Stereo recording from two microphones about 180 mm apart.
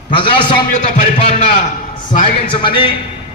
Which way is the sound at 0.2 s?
25° left (ahead or behind).